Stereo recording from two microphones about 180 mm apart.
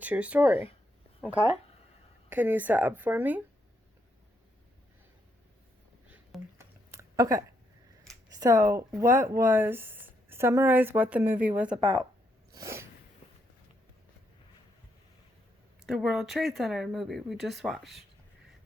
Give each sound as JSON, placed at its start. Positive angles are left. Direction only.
{"t": 0.0, "sound": "speech", "side_deg": -5}
{"t": 2.3, "sound": "speech", "side_deg": -10}
{"t": 6.1, "sound": "a sound", "side_deg": -10}
{"t": 8.4, "sound": "speech", "side_deg": -20}
{"t": 11.8, "sound": "speech", "side_deg": -25}
{"t": 12.5, "sound": "sneeze", "side_deg": -15}
{"t": 15.9, "sound": "speech", "side_deg": 0}